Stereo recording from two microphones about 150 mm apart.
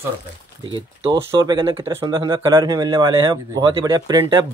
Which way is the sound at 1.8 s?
15° right (ahead or behind).